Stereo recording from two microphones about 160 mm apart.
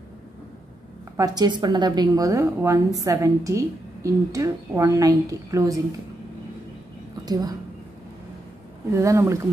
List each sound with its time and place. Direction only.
1.1 s a woman's voice: 25° right (ahead or behind)
7.2 s a woman's voice: 25° right (ahead or behind)
8.9 s a woman's voice: 20° right (ahead or behind)